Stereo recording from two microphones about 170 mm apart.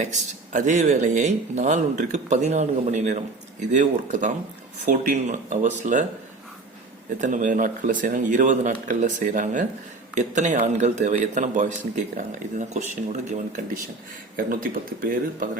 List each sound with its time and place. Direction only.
0.0 s speech: 45° right (ahead or behind)
7.2 s speech: 45° right (ahead or behind)